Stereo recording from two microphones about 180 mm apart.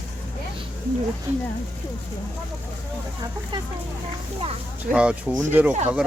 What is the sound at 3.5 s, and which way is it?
Speech, 25° right (ahead or behind).